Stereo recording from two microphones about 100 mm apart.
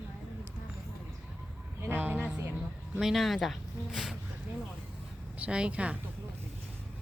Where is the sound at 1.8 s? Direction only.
20° right (ahead or behind).